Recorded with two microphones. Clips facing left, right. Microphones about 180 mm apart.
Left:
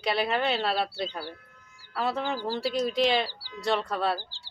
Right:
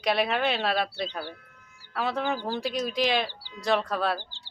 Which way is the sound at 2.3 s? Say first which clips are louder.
Even; 15° right (ahead or behind).